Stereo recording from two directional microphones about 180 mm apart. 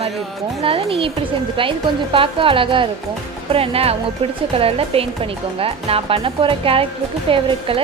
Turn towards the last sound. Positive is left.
turn(degrees=-30)  # may be behind; listen again after turning